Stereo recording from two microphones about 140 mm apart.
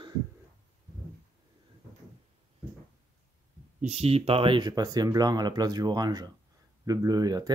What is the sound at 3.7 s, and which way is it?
Speech, 50° right (ahead or behind).